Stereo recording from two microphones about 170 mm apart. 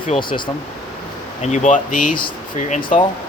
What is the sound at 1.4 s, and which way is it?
Speech, 45° left (ahead or behind).